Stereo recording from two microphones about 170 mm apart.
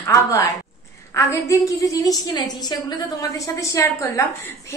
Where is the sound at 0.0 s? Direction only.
20° left (ahead or behind).